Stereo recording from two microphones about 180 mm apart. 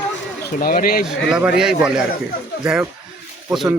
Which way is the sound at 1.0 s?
5° right (ahead or behind).